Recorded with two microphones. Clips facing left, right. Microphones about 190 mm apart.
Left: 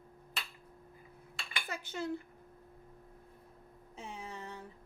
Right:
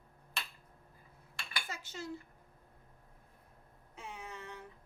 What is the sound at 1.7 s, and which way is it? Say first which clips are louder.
Cutlery: left 8 dB; 60° left (ahead or behind).